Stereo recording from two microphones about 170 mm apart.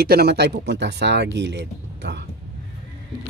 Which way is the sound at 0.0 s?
65° right (ahead or behind).